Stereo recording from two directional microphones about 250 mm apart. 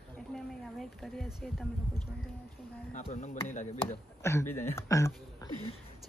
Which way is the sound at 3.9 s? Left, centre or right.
Centre.